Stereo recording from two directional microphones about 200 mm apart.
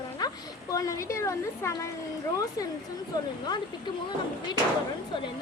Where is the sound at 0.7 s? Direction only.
15° left (ahead or behind).